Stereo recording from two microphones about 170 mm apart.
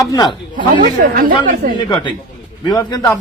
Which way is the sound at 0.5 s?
55° right (ahead or behind).